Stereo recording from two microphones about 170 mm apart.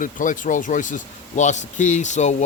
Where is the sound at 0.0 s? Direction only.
50° left (ahead or behind).